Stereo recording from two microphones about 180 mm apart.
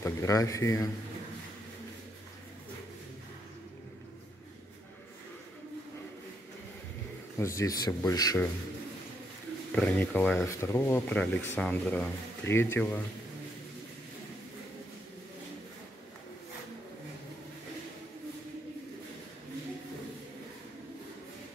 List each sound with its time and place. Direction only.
0.0 s speech: 20° left (ahead or behind)
7.3 s speech: 15° left (ahead or behind)
9.8 s speech: 10° left (ahead or behind)